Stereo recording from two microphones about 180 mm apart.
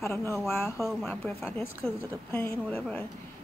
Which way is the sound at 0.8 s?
20° right (ahead or behind).